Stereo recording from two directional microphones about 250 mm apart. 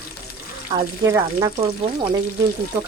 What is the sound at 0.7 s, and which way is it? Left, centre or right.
Speech, centre.